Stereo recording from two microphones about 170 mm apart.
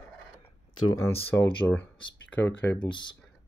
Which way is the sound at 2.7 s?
25° left (ahead or behind).